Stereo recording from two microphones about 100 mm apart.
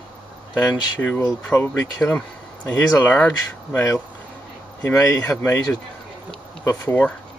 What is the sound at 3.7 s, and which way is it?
Speech, 25° left (ahead or behind).